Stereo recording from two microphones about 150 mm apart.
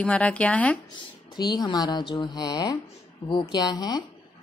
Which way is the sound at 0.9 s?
30° left (ahead or behind).